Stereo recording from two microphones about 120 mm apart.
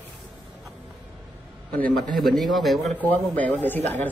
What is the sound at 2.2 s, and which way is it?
Speech, centre (ahead or behind).